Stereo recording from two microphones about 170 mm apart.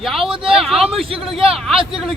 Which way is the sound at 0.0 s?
Centre (ahead or behind).